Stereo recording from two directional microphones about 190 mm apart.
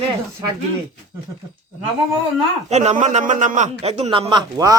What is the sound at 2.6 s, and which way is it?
A man's voice, 35° right (ahead or behind).